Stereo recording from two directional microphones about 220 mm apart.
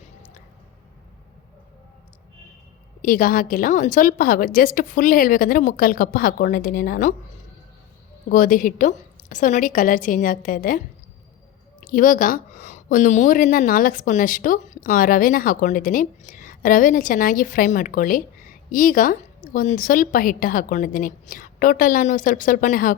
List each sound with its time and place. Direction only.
3.0 s a woman's voice: 40° left (ahead or behind)
8.3 s a woman's voice: 40° left (ahead or behind)